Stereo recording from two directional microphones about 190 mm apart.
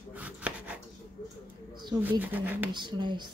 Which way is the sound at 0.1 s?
5° right (ahead or behind).